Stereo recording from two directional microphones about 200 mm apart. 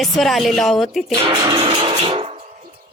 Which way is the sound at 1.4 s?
20° right (ahead or behind).